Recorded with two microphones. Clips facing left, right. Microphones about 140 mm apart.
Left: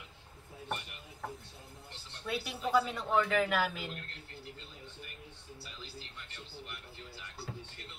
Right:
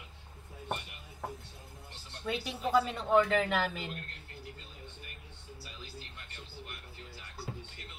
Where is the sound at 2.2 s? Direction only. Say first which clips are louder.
Right 2 dB; centre (ahead or behind).